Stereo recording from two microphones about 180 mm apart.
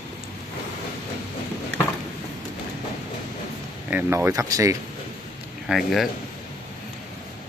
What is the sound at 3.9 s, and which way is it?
Speech, 15° right (ahead or behind).